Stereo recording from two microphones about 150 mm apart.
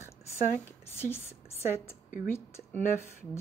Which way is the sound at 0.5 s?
15° left (ahead or behind).